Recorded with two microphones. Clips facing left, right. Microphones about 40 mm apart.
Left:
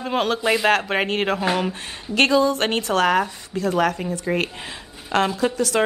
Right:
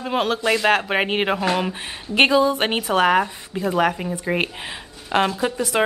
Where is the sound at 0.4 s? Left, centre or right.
Centre.